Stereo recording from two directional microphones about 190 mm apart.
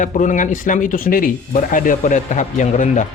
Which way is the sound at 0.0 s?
40° left (ahead or behind).